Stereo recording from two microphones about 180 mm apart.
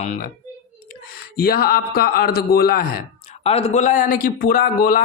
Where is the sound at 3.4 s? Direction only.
35° left (ahead or behind); by 5.0 s 55° left (ahead or behind).